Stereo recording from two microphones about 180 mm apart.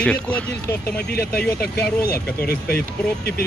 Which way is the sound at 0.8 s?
60° left (ahead or behind).